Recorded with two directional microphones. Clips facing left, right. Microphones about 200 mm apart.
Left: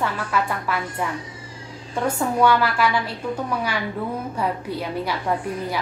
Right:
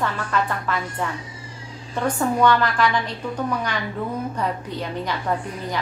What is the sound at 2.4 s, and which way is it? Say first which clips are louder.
Speech: left 1 dB; 5° left (ahead or behind).